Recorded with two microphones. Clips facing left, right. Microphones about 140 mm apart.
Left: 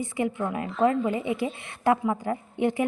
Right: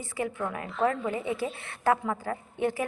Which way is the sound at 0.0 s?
20° left (ahead or behind).